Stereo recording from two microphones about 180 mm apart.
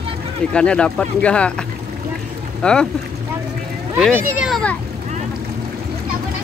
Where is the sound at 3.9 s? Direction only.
Centre (ahead or behind).